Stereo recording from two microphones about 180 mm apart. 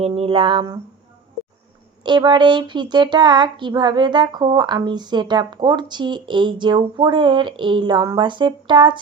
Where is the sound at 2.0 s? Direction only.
25° right (ahead or behind).